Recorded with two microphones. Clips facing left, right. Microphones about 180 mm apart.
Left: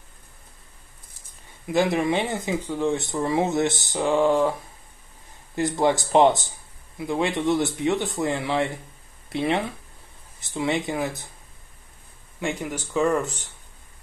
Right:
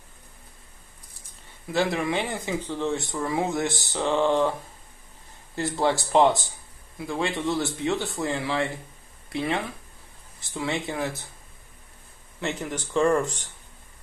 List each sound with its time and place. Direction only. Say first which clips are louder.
1.7 s speech: left 3 dB; 20° left (ahead or behind)
2.6 s speech: left 4 dB; 10° left (ahead or behind)
3.0 s speech: left 3 dB; 20° left (ahead or behind)
5.6 s speech: left 3 dB; 15° left (ahead or behind)
12.4 s speech: left 2 dB; 10° left (ahead or behind)